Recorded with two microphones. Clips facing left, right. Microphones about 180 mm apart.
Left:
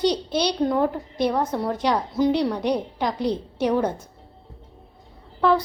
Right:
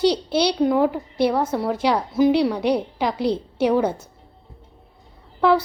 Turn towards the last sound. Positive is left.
turn(degrees=-10)  # may be behind; listen again after turning